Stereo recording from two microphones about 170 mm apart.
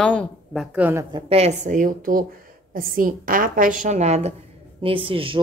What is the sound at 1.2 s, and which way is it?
A woman's voice, 40° right (ahead or behind).